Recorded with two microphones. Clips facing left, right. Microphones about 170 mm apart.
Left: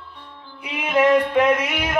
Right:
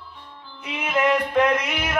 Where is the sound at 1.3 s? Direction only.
10° left (ahead or behind).